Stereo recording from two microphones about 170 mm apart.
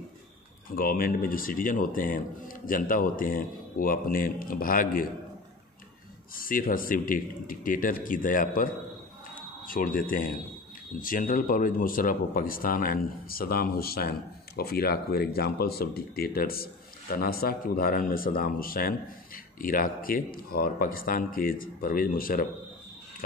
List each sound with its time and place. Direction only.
0.7 s speech: 60° left (ahead or behind)
6.3 s speech: 55° left (ahead or behind)
9.7 s speech: 55° left (ahead or behind)